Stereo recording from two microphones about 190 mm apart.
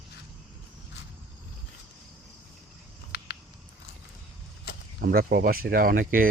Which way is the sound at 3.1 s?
60° left (ahead or behind).